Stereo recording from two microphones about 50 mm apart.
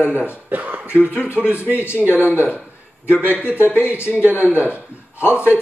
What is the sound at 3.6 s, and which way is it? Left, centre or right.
Speech, left.